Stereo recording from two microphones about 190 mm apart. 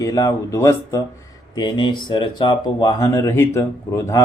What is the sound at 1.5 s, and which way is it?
Speech, 25° left (ahead or behind).